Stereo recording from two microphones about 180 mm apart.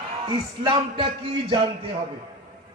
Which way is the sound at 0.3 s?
25° right (ahead or behind).